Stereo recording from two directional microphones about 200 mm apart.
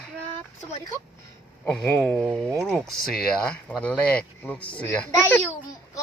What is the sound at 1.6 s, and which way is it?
Speech, 5° left (ahead or behind).